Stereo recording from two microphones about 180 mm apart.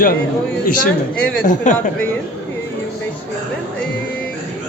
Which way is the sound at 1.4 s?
45° left (ahead or behind).